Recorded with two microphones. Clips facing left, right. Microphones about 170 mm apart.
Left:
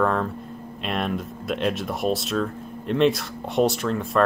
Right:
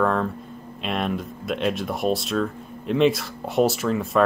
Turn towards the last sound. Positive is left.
turn(degrees=0)  # may be behind; listen again after turning